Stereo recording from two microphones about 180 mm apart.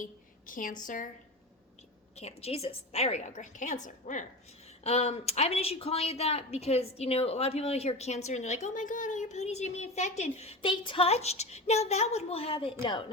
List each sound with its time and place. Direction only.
0.0 s a woman's voice: 50° left (ahead or behind)
2.1 s speech: 35° left (ahead or behind)